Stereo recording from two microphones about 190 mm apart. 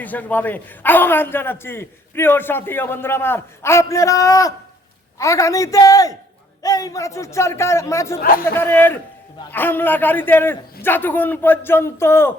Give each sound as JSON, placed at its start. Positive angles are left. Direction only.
{"t": 0.0, "sound": "a man's voice", "side_deg": 10}
{"t": 8.2, "sound": "speech", "side_deg": 50}
{"t": 8.5, "sound": "a man's voice", "side_deg": 10}